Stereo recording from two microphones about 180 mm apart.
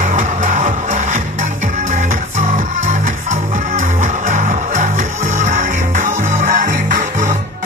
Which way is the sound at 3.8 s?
40° right (ahead or behind).